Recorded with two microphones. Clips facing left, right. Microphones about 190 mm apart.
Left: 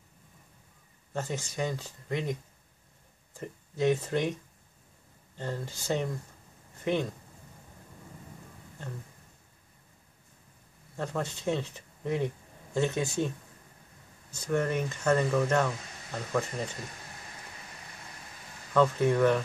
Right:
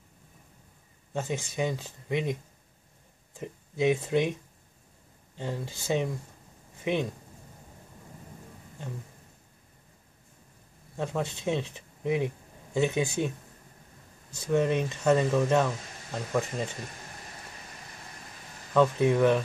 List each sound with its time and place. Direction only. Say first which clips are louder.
1.1 s speech: right 2 dB; 15° right (ahead or behind)
3.3 s speech: right 2 dB; 15° right (ahead or behind)
5.4 s speech: right 1 dB; 15° right (ahead or behind)
11.0 s speech: right 2 dB; 15° right (ahead or behind)
14.5 s speech: right 3 dB; 20° right (ahead or behind)
18.7 s speech: right 2 dB; 15° right (ahead or behind)